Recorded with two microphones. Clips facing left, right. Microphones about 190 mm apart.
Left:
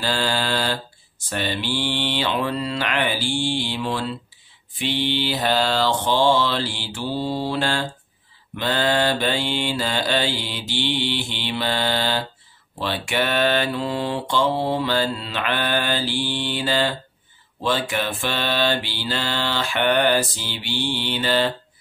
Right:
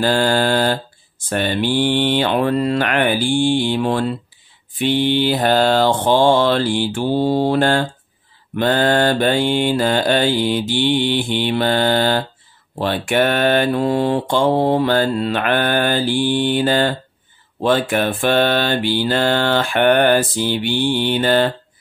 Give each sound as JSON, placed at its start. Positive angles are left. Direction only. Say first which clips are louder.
{"t": 0.0, "sound": "mantra", "louder": "right 8 dB", "side_deg": -50}